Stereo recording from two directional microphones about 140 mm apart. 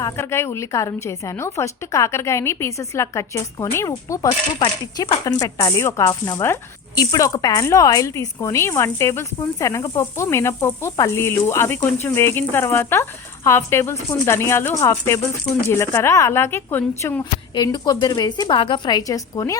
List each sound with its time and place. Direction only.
0.0 s speech: 20° left (ahead or behind)
4.6 s a woman's voice: 35° left (ahead or behind); by 17.2 s 15° left (ahead or behind)
17.5 s a woman's voice: 30° left (ahead or behind)